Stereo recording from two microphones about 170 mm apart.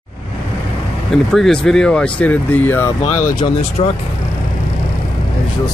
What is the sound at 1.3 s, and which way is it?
Speech, 5° left (ahead or behind).